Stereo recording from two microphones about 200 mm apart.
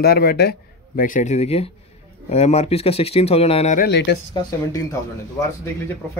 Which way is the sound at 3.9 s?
55° left (ahead or behind).